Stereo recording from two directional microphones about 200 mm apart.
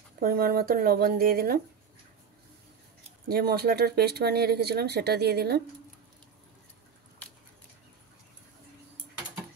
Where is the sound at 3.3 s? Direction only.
50° right (ahead or behind).